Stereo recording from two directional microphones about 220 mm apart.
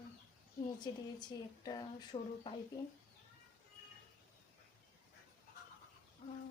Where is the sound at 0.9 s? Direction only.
20° left (ahead or behind).